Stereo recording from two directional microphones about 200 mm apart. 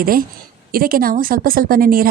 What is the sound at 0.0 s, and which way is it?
A woman's voice, 45° right (ahead or behind).